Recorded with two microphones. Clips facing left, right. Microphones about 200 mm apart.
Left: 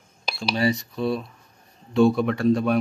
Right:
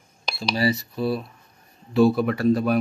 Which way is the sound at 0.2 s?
5° left (ahead or behind).